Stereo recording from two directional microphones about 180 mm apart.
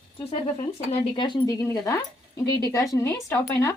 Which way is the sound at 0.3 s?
35° left (ahead or behind).